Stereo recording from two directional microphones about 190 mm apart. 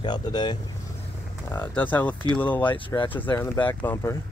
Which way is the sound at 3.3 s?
15° left (ahead or behind).